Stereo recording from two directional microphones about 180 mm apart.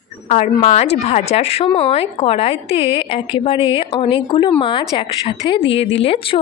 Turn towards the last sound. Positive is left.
turn(degrees=30)  # may be behind; listen again after turning